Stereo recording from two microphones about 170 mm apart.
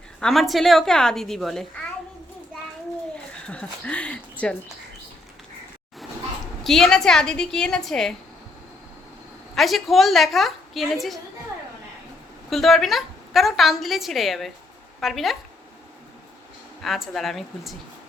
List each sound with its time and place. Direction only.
0.2 s a woman's voice: centre (ahead or behind)
3.4 s speech: 5° left (ahead or behind)
6.7 s a woman's voice: centre (ahead or behind)
9.6 s a woman's voice: centre (ahead or behind)
12.5 s a woman's voice: centre (ahead or behind)
16.8 s a woman's voice: centre (ahead or behind)